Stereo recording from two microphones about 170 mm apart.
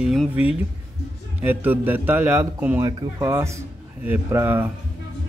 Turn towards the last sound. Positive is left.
turn(degrees=-15)  # may be behind; listen again after turning